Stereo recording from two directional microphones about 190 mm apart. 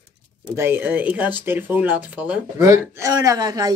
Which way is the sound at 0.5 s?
10° right (ahead or behind).